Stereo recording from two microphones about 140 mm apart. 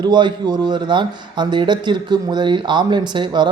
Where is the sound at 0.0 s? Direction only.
30° right (ahead or behind).